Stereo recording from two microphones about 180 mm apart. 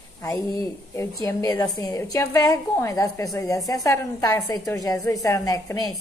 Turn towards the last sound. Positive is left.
turn(degrees=20)  # may be behind; listen again after turning